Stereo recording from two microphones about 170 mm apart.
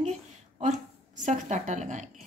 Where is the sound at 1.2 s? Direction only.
45° right (ahead or behind).